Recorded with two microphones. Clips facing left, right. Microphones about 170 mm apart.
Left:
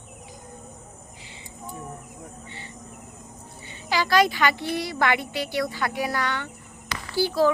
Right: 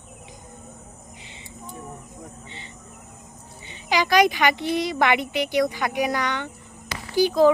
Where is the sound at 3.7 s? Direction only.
15° right (ahead or behind).